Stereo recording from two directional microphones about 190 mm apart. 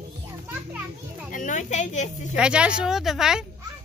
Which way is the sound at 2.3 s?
5° right (ahead or behind).